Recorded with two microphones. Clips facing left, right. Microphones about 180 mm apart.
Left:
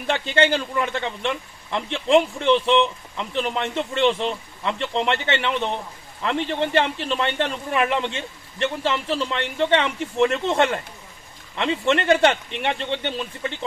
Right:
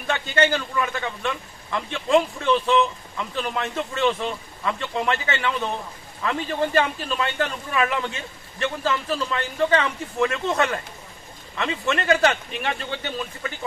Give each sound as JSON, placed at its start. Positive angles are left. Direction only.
{"t": 0.0, "sound": "a man's voice", "side_deg": 30}